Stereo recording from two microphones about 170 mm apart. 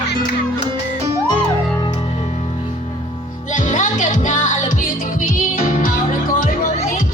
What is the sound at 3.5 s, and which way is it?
Music, 50° left (ahead or behind).